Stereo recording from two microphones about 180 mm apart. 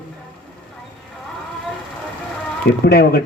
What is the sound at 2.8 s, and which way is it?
Speech, 60° left (ahead or behind).